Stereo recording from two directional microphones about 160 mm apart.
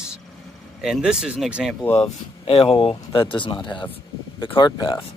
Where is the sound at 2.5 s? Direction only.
35° left (ahead or behind).